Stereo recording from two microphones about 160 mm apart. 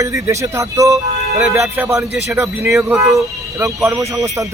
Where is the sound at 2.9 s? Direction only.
20° right (ahead or behind).